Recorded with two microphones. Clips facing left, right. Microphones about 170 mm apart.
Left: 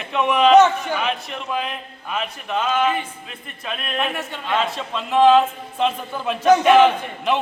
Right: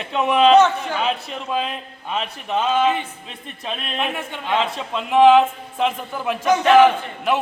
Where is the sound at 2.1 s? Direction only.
25° right (ahead or behind).